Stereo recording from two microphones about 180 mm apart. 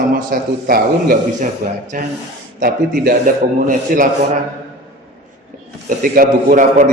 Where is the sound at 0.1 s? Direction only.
50° right (ahead or behind).